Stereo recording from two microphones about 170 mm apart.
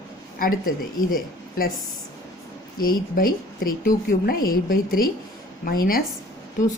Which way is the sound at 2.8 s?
60° left (ahead or behind).